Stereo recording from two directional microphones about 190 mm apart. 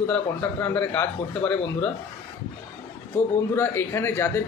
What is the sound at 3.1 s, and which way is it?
Speech, 10° left (ahead or behind).